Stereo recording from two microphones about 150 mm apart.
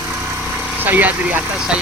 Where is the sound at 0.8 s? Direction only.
10° right (ahead or behind).